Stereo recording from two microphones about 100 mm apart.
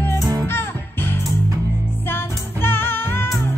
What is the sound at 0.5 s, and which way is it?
Music, 25° left (ahead or behind).